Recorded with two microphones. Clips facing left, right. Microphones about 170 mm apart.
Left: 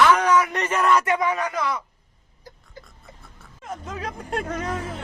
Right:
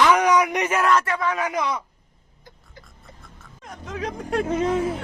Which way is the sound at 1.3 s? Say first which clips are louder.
Right 1 dB; 15° right (ahead or behind).